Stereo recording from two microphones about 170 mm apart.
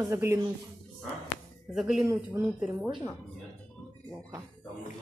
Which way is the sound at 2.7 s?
20° right (ahead or behind).